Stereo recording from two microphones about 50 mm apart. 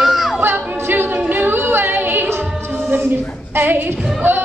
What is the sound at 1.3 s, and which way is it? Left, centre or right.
Singing, right.